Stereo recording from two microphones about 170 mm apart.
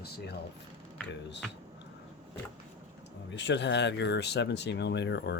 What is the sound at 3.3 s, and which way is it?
Speech, 90° left.